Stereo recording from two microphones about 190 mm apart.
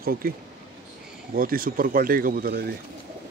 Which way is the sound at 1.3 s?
50° right (ahead or behind).